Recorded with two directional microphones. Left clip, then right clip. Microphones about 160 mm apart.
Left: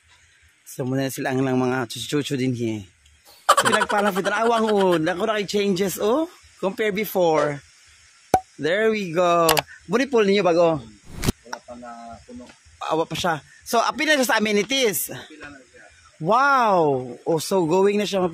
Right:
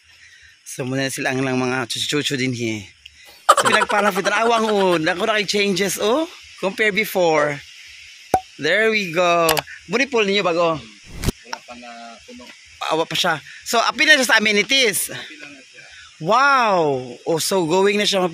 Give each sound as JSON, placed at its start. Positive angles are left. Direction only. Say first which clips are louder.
{"t": 0.7, "sound": "a man's voice", "louder": "right 2 dB", "side_deg": 10}
{"t": 9.8, "sound": "a man's voice", "louder": "right 1 dB", "side_deg": 35}
{"t": 11.2, "sound": "a sound", "louder": "even", "side_deg": 0}
{"t": 12.7, "sound": "a man's voice", "louder": "right 4 dB", "side_deg": 5}
{"t": 17.0, "sound": "a man's voice", "louder": "right 2 dB", "side_deg": 5}